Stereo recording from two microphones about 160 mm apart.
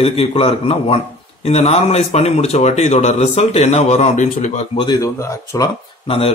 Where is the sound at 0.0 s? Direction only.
35° left (ahead or behind).